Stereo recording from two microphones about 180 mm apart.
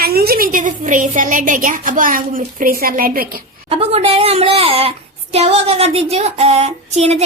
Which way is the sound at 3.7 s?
35° right (ahead or behind).